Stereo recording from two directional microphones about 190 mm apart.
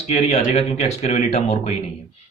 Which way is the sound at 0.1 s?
35° left (ahead or behind).